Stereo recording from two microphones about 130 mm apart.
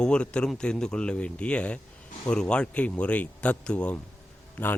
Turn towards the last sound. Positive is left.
turn(degrees=15)  # may be behind; listen again after turning